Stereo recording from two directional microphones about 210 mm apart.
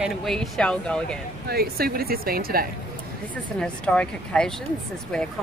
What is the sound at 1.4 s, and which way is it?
Speech, 45° right (ahead or behind).